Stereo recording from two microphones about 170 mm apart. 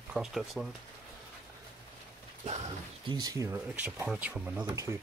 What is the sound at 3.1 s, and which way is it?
Speech, 20° right (ahead or behind).